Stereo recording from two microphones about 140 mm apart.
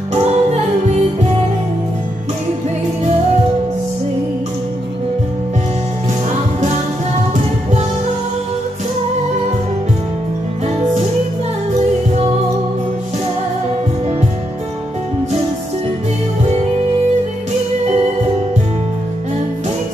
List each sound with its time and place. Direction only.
0.1 s music: 50° right (ahead or behind)